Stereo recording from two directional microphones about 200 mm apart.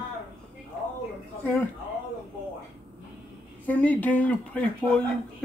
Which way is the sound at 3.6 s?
10° left (ahead or behind).